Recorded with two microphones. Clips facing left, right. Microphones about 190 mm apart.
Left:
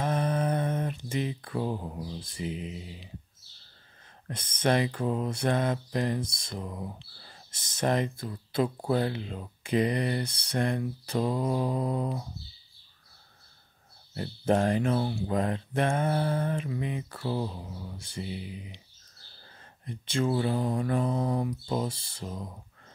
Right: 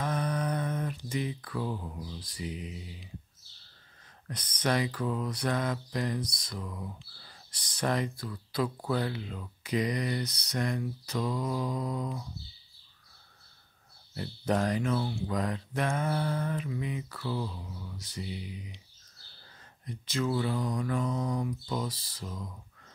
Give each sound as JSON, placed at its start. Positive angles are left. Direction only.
{"t": 0.0, "sound": "mantra", "side_deg": 30}
{"t": 4.3, "sound": "mantra", "side_deg": 25}
{"t": 14.4, "sound": "mantra", "side_deg": 30}
{"t": 19.9, "sound": "mantra", "side_deg": 25}